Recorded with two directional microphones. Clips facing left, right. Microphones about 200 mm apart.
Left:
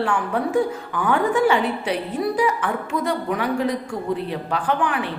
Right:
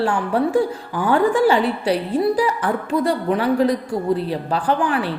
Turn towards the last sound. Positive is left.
turn(degrees=-35)  # may be behind; listen again after turning